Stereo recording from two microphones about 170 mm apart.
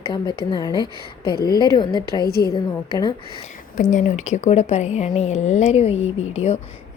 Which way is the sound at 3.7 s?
50° left (ahead or behind).